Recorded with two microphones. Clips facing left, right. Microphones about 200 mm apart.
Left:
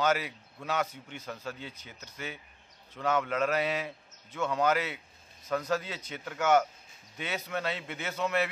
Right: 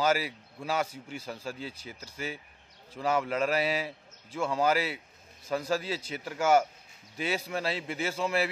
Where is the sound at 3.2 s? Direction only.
30° right (ahead or behind).